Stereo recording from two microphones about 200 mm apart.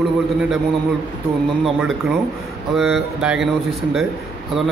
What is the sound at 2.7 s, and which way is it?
Speech, centre (ahead or behind).